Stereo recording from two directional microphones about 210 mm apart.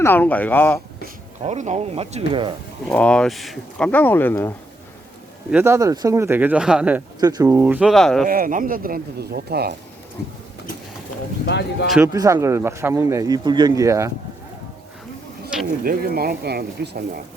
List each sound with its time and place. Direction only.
0.0 s speech: 10° left (ahead or behind)
1.0 s speech: 35° right (ahead or behind)
2.8 s speech: 5° left (ahead or behind)
5.5 s speech: 10° right (ahead or behind)
7.2 s speech: 20° right (ahead or behind); by 8.3 s centre (ahead or behind)
8.3 s speech: 40° right (ahead or behind)
11.4 s speech: 55° left (ahead or behind)
11.9 s speech: 10° right (ahead or behind)
15.8 s speech: 45° right (ahead or behind)